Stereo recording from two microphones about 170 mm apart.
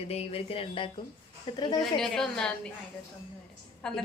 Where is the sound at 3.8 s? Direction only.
5° left (ahead or behind).